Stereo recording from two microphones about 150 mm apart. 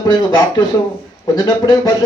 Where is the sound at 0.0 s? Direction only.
25° left (ahead or behind).